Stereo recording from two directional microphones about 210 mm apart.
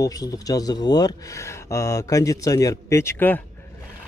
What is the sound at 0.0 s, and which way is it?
Speech, 15° left (ahead or behind).